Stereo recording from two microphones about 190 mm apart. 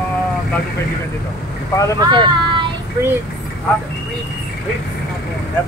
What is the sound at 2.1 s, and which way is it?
Speech, 25° right (ahead or behind).